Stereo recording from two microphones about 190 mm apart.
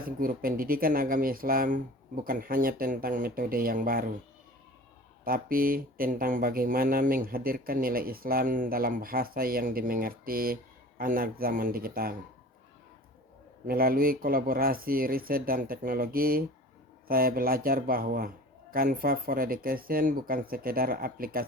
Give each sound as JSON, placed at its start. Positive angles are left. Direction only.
{"t": 0.0, "sound": "speech", "side_deg": -50}
{"t": 5.2, "sound": "speech", "side_deg": -50}
{"t": 13.7, "sound": "speech", "side_deg": -50}